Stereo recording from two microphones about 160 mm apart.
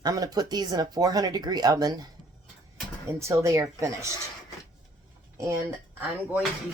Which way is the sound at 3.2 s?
15° right (ahead or behind).